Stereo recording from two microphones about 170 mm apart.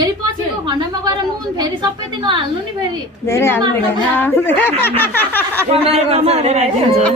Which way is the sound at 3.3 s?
15° left (ahead or behind).